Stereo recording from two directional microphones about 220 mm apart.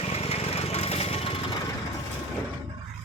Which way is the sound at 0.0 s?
30° left (ahead or behind).